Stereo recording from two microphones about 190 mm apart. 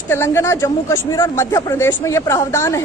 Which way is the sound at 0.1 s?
15° left (ahead or behind).